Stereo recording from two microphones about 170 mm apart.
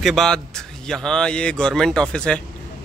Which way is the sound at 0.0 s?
Centre (ahead or behind).